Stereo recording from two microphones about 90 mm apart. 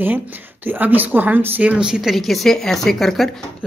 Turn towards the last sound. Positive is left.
turn(degrees=5)  # may be behind; listen again after turning